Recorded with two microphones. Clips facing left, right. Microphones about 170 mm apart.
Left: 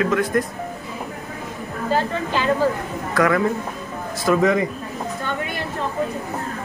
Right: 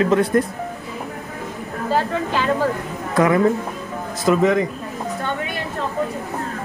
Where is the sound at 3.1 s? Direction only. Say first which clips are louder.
Right 3 dB; 20° right (ahead or behind).